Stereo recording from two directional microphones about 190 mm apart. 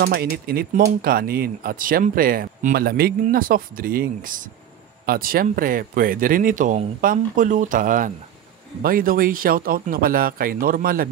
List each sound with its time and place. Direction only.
0.0 s speech: 55° right (ahead or behind)